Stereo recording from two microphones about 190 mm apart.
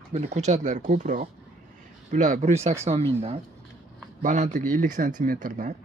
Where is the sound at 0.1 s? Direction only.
40° right (ahead or behind).